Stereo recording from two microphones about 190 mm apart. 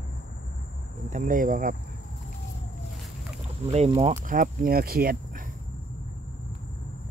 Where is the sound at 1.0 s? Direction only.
45° right (ahead or behind).